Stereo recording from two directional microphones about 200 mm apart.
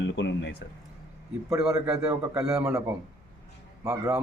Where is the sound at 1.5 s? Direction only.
15° right (ahead or behind).